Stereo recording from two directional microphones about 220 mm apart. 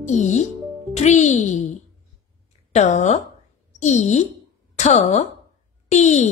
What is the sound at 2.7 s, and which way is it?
A child's voice, 30° left (ahead or behind).